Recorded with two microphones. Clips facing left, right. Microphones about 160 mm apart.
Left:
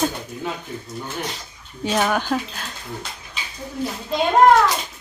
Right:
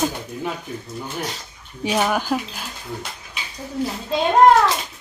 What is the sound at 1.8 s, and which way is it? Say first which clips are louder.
Speech: even; 5° right (ahead or behind).